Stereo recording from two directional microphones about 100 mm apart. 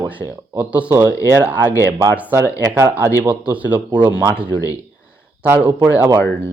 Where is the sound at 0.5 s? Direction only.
15° right (ahead or behind).